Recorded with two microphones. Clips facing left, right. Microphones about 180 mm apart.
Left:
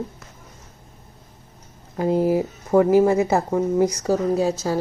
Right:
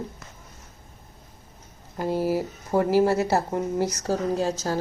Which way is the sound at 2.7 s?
20° left (ahead or behind).